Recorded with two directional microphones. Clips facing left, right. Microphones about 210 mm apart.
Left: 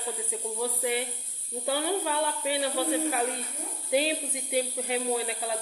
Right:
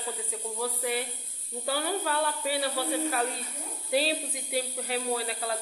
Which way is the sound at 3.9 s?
15° left (ahead or behind).